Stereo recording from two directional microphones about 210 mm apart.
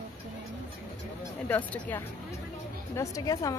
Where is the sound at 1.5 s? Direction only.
10° left (ahead or behind).